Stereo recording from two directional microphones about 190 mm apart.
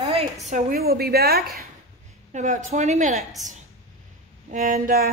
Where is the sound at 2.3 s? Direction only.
40° right (ahead or behind).